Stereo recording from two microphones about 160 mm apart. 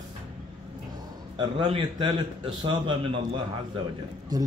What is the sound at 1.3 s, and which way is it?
A man's voice, 30° right (ahead or behind).